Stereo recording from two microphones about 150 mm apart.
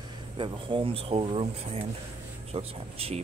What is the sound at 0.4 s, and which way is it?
Speech, 35° right (ahead or behind).